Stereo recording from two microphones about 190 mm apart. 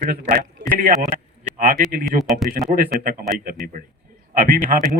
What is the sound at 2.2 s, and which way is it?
Speech, centre (ahead or behind).